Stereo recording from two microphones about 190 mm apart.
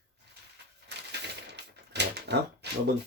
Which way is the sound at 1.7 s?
65° right (ahead or behind).